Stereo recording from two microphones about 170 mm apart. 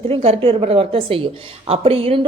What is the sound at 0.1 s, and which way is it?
A woman's voice, 35° right (ahead or behind).